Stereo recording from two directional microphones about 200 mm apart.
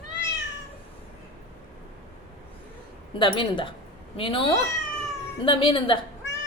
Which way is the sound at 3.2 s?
25° left (ahead or behind).